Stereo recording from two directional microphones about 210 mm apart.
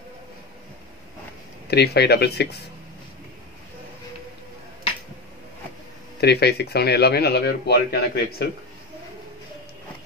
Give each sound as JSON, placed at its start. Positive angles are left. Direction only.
{"t": 1.7, "sound": "speech", "side_deg": 50}
{"t": 6.2, "sound": "speech", "side_deg": 50}